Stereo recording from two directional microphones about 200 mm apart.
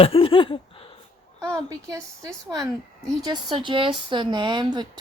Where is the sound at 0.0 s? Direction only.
25° left (ahead or behind).